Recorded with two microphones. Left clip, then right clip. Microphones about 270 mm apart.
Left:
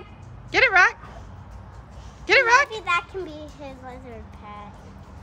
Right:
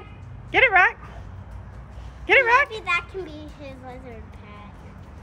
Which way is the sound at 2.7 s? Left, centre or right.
Left.